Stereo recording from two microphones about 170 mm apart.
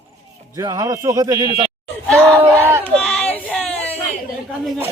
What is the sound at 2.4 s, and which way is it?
Crowd, 15° right (ahead or behind).